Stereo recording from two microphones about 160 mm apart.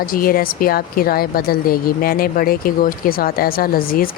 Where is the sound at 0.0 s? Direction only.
65° left (ahead or behind).